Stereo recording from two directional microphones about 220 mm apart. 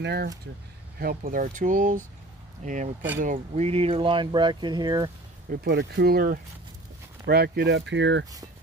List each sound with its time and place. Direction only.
0.0 s speech: 45° right (ahead or behind); by 5.1 s 20° right (ahead or behind)
5.5 s speech: 45° right (ahead or behind)